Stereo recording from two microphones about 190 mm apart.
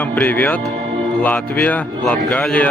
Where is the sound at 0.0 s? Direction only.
10° left (ahead or behind).